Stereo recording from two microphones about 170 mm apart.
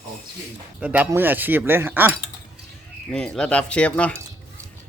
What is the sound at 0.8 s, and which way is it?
Speech, 10° right (ahead or behind).